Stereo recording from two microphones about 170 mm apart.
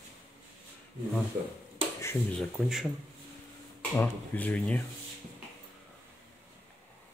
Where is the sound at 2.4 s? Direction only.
Centre (ahead or behind).